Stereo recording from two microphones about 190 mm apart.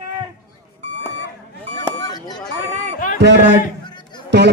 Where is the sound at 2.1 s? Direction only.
20° left (ahead or behind).